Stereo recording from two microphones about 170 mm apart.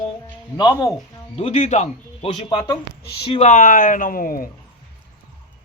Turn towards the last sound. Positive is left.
turn(degrees=55)  # may be behind; listen again after turning